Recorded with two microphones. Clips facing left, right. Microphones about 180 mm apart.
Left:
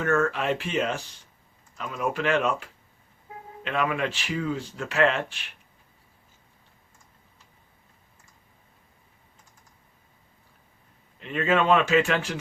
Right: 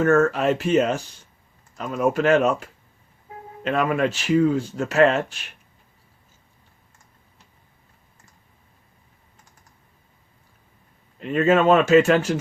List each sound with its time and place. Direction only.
0.0 s speech: 45° right (ahead or behind)
11.2 s speech: 45° right (ahead or behind)